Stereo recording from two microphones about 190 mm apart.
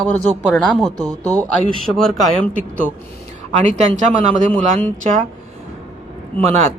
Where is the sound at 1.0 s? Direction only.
20° right (ahead or behind).